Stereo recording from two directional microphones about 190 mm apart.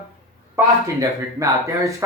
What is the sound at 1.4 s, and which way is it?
Speech, 15° right (ahead or behind).